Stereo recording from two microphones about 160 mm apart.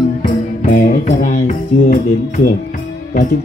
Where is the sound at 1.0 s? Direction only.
50° left (ahead or behind).